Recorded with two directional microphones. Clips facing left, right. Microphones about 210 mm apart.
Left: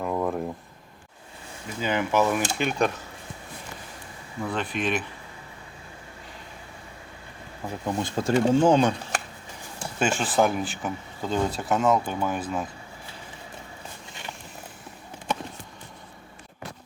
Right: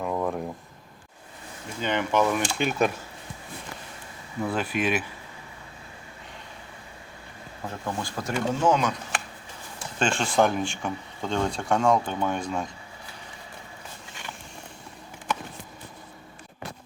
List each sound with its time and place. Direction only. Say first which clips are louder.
0.0 s a sound: left 1 dB; centre (ahead or behind)
1.8 s speech: left 1 dB; 5° left (ahead or behind)
4.4 s speech: right 1 dB; 5° right (ahead or behind)
7.7 s speech: left 4 dB; 20° left (ahead or behind)
10.0 s speech: even; 5° left (ahead or behind)